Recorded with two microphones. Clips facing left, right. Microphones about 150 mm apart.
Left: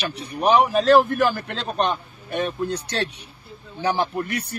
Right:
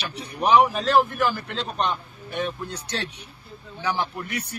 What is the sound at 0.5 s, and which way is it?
A man's voice, 45° left (ahead or behind).